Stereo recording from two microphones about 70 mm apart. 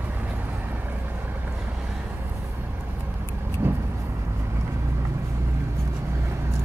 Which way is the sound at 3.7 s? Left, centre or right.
Right.